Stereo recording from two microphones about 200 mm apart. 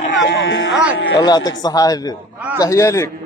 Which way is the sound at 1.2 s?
20° left (ahead or behind).